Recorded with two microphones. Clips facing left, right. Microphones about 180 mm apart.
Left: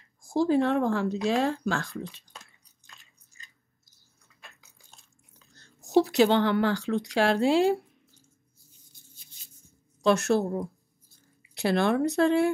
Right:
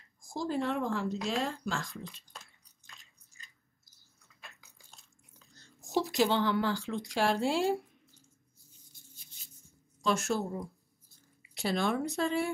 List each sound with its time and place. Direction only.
0.3 s speech: 70° left (ahead or behind)
5.5 s a woman's voice: 65° left (ahead or behind)
10.0 s speech: 70° left (ahead or behind)